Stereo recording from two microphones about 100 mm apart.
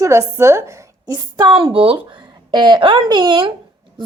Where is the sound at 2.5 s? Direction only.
50° right (ahead or behind).